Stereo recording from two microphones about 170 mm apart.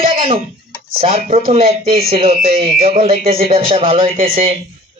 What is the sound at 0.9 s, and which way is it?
Speech, 35° right (ahead or behind).